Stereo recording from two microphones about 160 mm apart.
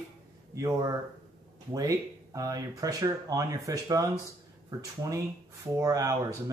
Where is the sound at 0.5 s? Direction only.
20° right (ahead or behind).